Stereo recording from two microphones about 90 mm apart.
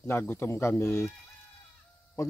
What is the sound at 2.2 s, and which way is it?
Speech, 35° left (ahead or behind).